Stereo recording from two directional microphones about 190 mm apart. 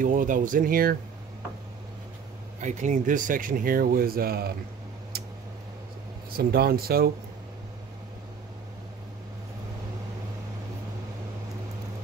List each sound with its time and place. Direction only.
0.0 s speech: 45° right (ahead or behind)
2.6 s speech: 40° right (ahead or behind)
6.3 s speech: 55° right (ahead or behind)